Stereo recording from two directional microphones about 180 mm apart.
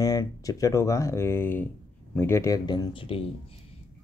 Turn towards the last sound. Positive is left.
turn(degrees=30)  # may be behind; listen again after turning